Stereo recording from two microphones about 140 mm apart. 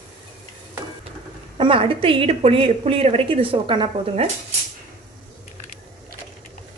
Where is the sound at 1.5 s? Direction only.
40° right (ahead or behind).